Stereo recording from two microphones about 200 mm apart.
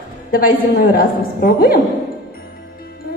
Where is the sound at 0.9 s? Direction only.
45° left (ahead or behind).